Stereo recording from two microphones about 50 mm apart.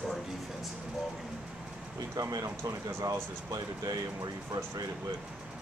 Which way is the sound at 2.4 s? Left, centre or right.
Right.